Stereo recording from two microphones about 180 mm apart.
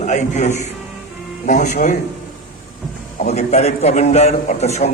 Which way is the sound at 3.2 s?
40° left (ahead or behind).